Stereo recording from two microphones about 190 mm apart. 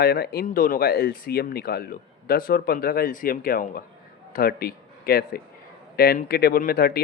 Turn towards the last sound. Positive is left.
turn(degrees=55)  # may be behind; listen again after turning